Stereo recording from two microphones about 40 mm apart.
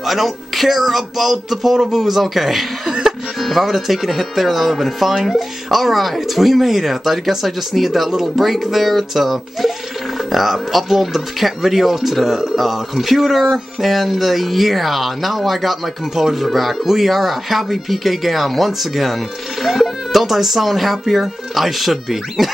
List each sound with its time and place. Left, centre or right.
0.0 s speech: centre
2.9 s music: centre
3.3 s speech: centre